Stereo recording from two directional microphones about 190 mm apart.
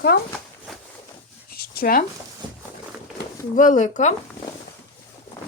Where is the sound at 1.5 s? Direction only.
50° left (ahead or behind).